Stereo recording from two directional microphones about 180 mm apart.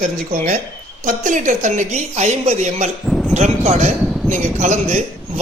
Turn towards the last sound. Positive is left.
turn(degrees=-40)  # may be behind; listen again after turning